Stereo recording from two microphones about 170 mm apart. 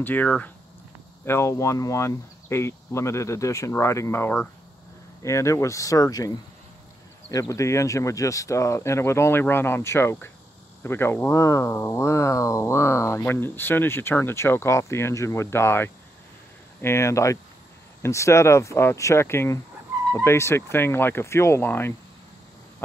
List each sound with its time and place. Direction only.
0.0 s speech: 10° left (ahead or behind)